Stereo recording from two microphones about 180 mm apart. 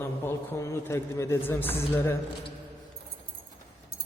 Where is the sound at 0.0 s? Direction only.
15° left (ahead or behind).